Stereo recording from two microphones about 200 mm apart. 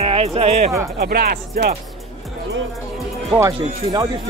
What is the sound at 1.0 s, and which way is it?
Speech, 50° right (ahead or behind).